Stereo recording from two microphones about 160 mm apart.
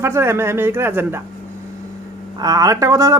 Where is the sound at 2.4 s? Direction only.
25° right (ahead or behind).